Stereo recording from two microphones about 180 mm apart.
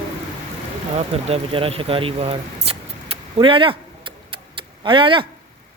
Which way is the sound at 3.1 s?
30° right (ahead or behind).